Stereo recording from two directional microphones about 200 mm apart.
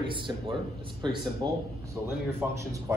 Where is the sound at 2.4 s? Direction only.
5° right (ahead or behind).